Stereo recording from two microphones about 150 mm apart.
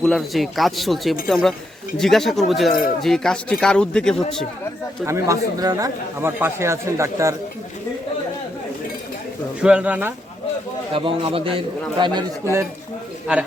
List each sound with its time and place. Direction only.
0.0 s speech: centre (ahead or behind)
5.0 s speech: 20° right (ahead or behind)
9.6 s speech: 10° right (ahead or behind)
10.9 s a man's voice: 35° right (ahead or behind)